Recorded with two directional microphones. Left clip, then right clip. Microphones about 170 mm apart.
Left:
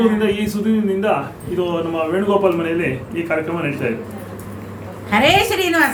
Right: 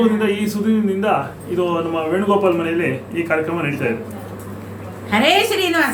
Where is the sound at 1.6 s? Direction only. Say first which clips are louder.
Even; 15° right (ahead or behind).